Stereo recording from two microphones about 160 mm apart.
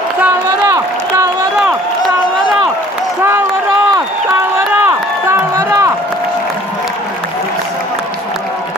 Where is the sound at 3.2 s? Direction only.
15° right (ahead or behind).